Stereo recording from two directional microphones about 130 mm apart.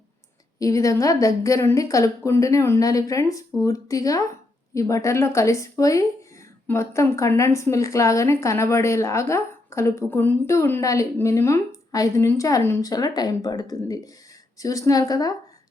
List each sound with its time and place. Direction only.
0.6 s speech: 25° left (ahead or behind)